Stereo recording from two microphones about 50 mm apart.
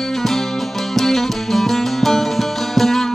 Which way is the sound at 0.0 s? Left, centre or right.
Centre.